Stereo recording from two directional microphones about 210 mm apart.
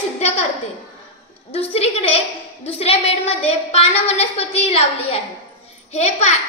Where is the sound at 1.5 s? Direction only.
30° left (ahead or behind).